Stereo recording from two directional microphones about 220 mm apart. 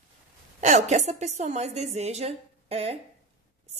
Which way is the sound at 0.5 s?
30° right (ahead or behind).